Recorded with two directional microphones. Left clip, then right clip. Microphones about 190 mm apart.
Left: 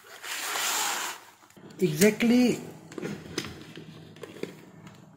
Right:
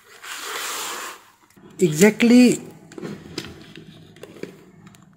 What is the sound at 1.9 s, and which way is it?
Speech, 45° right (ahead or behind).